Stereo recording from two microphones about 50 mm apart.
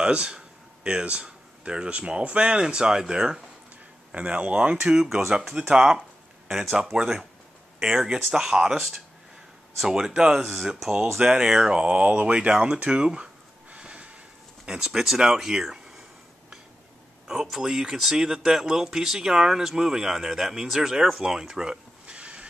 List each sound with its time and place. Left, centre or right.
0.0 s speech: centre
4.1 s speech: right; by 9.0 s centre
9.8 s speech: centre
10.4 s speech: centre
11.1 s speech: centre
17.3 s speech: centre
22.0 s a sound: right